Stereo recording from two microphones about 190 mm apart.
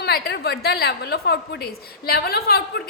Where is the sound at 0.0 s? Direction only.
60° left (ahead or behind).